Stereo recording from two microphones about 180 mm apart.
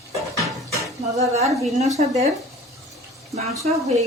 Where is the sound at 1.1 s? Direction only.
35° right (ahead or behind).